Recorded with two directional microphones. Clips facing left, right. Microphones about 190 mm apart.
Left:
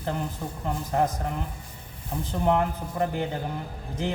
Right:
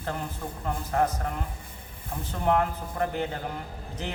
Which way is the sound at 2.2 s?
15° left (ahead or behind).